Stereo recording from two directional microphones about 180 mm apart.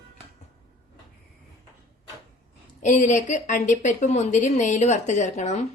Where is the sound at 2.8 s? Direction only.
40° left (ahead or behind).